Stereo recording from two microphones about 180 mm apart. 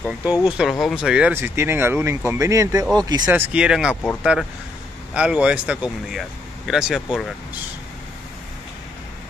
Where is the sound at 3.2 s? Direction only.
5° right (ahead or behind).